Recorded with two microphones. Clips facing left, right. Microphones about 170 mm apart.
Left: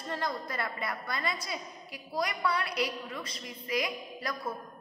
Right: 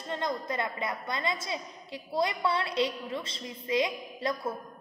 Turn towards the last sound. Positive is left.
turn(degrees=-25)  # may be behind; listen again after turning